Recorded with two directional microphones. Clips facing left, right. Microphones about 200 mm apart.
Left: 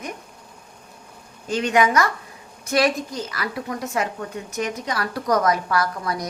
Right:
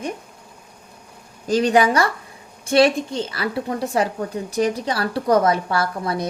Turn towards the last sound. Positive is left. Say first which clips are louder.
# right 1 dB
turn(degrees=-30)  # may be behind; listen again after turning